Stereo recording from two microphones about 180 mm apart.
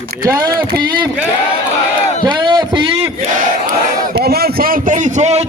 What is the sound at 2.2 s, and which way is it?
Speech, 25° right (ahead or behind).